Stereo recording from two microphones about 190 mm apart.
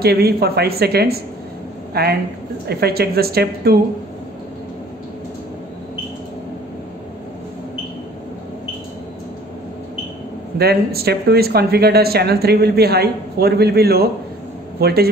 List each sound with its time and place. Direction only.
0.0 s speech: 55° right (ahead or behind)
10.6 s speech: 55° right (ahead or behind)